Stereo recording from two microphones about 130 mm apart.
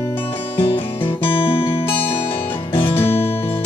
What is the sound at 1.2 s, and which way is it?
Music, 45° left (ahead or behind).